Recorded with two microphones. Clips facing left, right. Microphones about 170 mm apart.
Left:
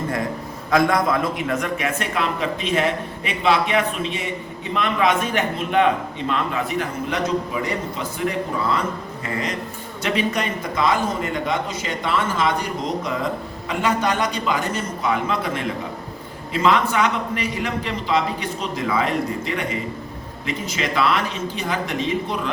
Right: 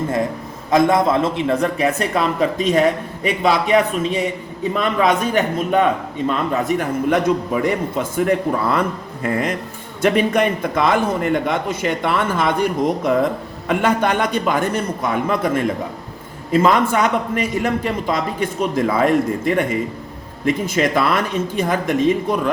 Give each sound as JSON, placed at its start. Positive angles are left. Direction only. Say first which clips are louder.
{"t": 0.7, "sound": "a man's voice", "louder": "right 4 dB", "side_deg": -25}
{"t": 10.0, "sound": "a man's voice", "louder": "right 7 dB", "side_deg": -55}